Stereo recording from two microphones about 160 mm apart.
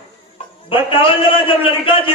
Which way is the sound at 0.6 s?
35° left (ahead or behind).